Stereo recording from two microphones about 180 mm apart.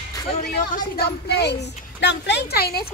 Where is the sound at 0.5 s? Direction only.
65° left (ahead or behind).